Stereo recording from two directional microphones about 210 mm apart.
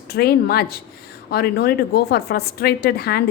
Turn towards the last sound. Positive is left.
turn(degrees=50)  # may be behind; listen again after turning